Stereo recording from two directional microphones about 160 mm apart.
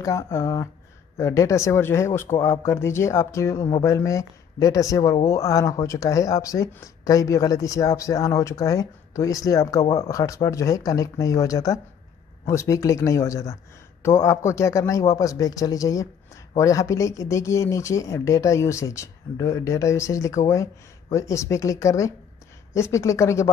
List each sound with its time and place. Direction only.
0.0 s speech: 20° left (ahead or behind)